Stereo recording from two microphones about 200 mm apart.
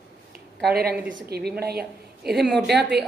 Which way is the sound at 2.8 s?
55° right (ahead or behind).